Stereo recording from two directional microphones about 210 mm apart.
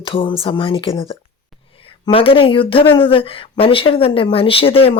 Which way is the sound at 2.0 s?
25° left (ahead or behind).